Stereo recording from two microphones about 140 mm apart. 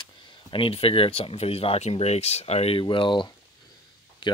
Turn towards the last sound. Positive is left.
turn(degrees=35)  # may be behind; listen again after turning